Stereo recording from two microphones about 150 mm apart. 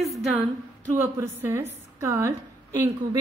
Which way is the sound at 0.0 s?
Centre (ahead or behind).